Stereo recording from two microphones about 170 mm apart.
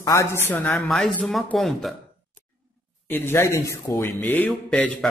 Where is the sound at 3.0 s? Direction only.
10° left (ahead or behind).